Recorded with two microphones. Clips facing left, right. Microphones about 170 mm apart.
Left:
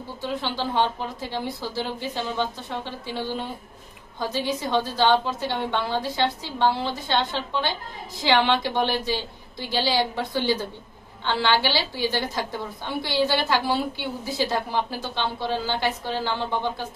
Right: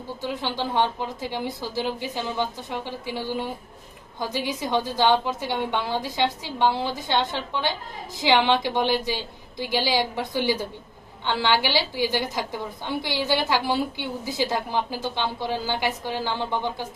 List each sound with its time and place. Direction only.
0.2 s a woman's voice: 15° right (ahead or behind)
4.3 s a woman's voice: 15° right (ahead or behind)